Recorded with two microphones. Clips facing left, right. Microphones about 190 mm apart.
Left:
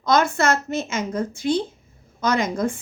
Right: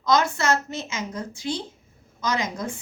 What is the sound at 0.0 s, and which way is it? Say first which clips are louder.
A woman's voice: left 3 dB; 55° left (ahead or behind).